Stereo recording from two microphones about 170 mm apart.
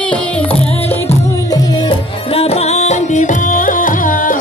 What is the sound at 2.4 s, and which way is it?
Music, 40° left (ahead or behind).